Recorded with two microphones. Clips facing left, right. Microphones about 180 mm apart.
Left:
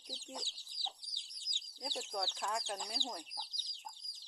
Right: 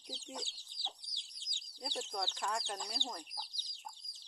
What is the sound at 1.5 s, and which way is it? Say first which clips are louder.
Chicken: left 2 dB; 15° left (ahead or behind).